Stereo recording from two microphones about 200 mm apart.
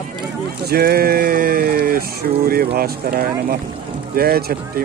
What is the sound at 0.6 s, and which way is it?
Speech, 50° right (ahead or behind).